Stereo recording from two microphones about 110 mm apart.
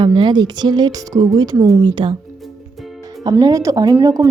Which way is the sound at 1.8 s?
45° right (ahead or behind).